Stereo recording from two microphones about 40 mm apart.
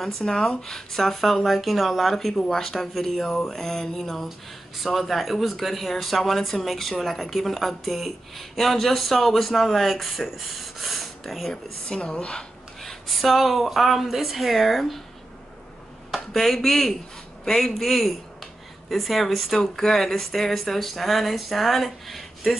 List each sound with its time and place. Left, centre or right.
0.0 s speech: centre
11.5 s a woman's voice: left
12.8 s speech: centre
16.3 s speech: centre